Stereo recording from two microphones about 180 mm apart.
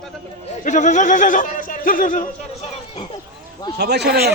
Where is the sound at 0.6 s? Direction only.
40° left (ahead or behind).